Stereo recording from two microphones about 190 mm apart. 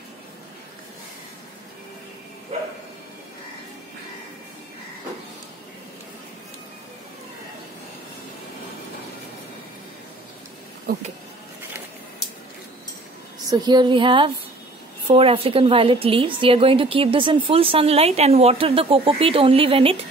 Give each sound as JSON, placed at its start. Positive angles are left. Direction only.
{"t": 10.9, "sound": "speech", "side_deg": -45}
{"t": 13.5, "sound": "a woman's voice", "side_deg": -20}